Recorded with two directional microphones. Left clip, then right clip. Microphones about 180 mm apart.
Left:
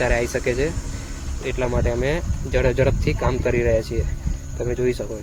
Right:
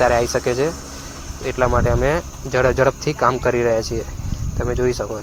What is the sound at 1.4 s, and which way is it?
Speech, 35° right (ahead or behind).